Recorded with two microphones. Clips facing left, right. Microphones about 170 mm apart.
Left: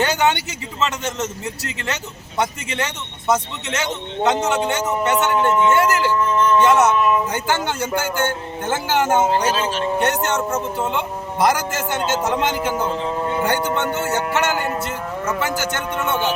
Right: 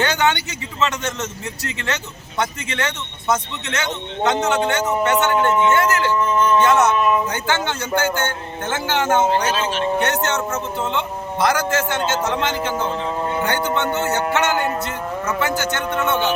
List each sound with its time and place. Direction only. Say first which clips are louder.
0.0 s a man's voice: left 1 dB; 5° left (ahead or behind)
2.4 s a man's voice: left 1 dB; 5° left (ahead or behind)
9.5 s speech: left 1 dB; 40° left (ahead or behind)
10.1 s speech: left 1 dB; 10° left (ahead or behind)